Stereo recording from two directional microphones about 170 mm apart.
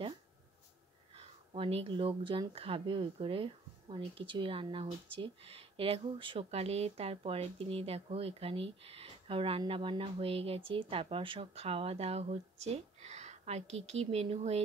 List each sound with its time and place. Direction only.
1.1 s speech: 35° right (ahead or behind)